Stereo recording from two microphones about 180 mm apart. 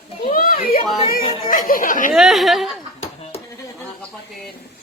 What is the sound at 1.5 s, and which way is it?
Chatter, 50° left (ahead or behind).